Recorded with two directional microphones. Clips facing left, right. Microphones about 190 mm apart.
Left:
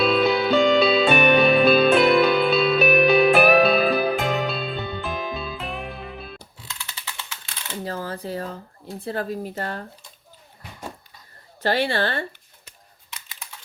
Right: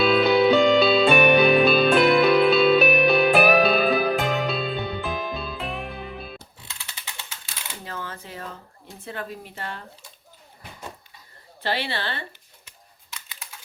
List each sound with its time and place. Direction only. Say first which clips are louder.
0.0 s music: right 2 dB; centre (ahead or behind)
7.9 s a sound: left 7 dB; 35° left (ahead or behind)
9.0 s speech: left 7 dB; 35° left (ahead or behind)
11.6 s a woman's voice: left 6 dB; 45° left (ahead or behind)